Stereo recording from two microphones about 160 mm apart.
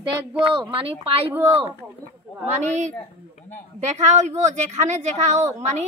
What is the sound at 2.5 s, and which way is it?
A woman's voice, 45° right (ahead or behind).